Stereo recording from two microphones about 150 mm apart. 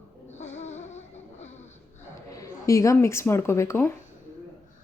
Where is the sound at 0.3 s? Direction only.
50° left (ahead or behind).